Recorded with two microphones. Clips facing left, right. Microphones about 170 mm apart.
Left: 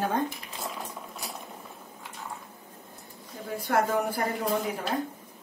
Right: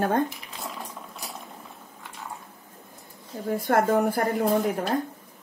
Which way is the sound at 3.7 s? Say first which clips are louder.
Right 4 dB; 50° right (ahead or behind).